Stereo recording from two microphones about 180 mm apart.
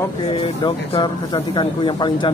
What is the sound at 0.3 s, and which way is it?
A man's voice, 30° left (ahead or behind).